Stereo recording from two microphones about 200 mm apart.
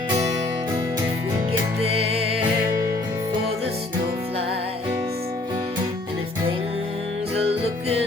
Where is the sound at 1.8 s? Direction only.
30° right (ahead or behind).